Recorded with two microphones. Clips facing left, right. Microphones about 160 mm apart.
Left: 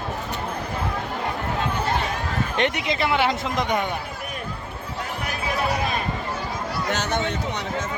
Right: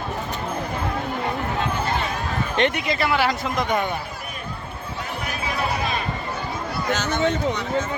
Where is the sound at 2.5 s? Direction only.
15° left (ahead or behind).